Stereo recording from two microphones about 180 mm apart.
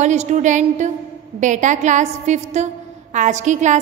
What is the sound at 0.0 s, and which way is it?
A woman's voice, 40° right (ahead or behind).